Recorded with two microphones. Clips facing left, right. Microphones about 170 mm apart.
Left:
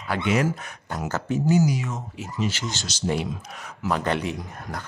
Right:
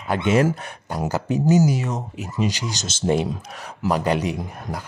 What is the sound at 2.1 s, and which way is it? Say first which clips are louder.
Speech: right 4 dB; 15° right (ahead or behind).